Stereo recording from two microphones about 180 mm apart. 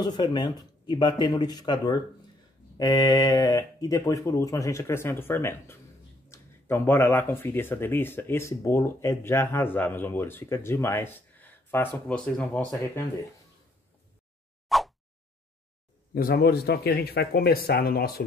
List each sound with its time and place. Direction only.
0.0 s speech: 25° left (ahead or behind); by 12.6 s 5° left (ahead or behind)
14.7 s a sound: centre (ahead or behind)
16.2 s speech: 55° left (ahead or behind)